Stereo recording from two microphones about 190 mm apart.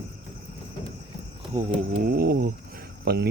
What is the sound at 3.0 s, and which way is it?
Speech, 55° right (ahead or behind).